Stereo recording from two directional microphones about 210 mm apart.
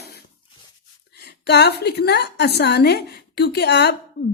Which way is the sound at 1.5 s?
50° left (ahead or behind).